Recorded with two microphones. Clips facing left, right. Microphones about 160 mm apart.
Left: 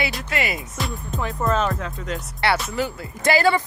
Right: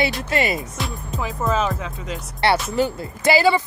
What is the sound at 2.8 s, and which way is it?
Music, 25° right (ahead or behind).